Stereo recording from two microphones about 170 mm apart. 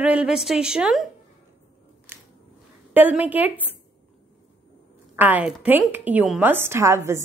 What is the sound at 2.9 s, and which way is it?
Speech, 10° right (ahead or behind).